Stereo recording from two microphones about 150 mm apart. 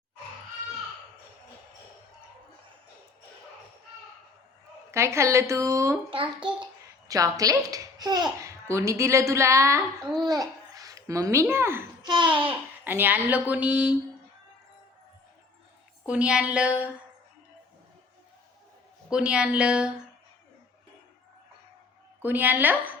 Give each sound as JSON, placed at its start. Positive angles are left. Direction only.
{"t": 4.9, "sound": "a child's voice", "side_deg": -20}
{"t": 6.1, "sound": "a child's voice", "side_deg": -35}
{"t": 7.1, "sound": "a child's voice", "side_deg": -25}
{"t": 12.0, "sound": "a child's voice", "side_deg": -30}
{"t": 12.8, "sound": "speech", "side_deg": -10}
{"t": 16.0, "sound": "speech", "side_deg": -5}
{"t": 19.1, "sound": "speech", "side_deg": -5}
{"t": 22.2, "sound": "speech", "side_deg": -10}